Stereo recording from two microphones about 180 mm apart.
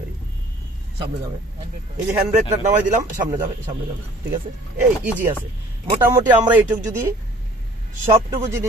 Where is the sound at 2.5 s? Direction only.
40° right (ahead or behind).